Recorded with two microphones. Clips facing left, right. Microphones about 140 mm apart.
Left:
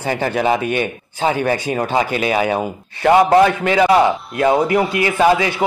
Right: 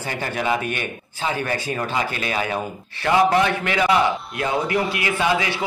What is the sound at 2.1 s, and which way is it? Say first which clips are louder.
Speech: left 8 dB; 20° left (ahead or behind).